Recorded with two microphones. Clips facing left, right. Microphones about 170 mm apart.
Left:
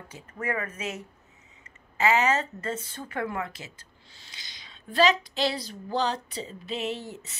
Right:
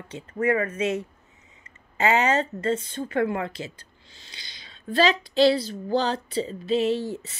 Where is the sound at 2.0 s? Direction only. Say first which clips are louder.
Right 2 dB; 35° right (ahead or behind).